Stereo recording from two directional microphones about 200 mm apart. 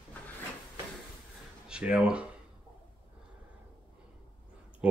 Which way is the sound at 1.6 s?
5° right (ahead or behind).